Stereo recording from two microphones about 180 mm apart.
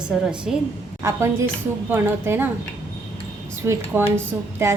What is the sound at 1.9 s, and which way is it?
Speech, 10° right (ahead or behind).